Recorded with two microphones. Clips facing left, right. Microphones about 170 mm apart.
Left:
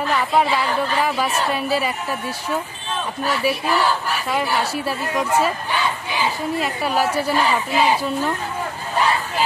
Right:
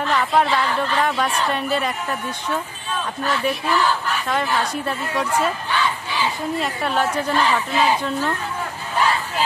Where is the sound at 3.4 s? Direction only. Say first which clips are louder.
Left 1 dB; 5° left (ahead or behind).